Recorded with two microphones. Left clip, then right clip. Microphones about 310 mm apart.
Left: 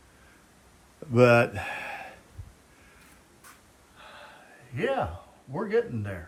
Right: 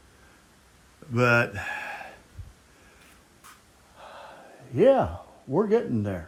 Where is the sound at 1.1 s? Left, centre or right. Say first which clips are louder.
Left 2 dB; centre.